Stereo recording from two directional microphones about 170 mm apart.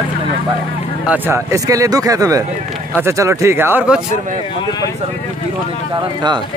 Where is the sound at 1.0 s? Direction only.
10° right (ahead or behind).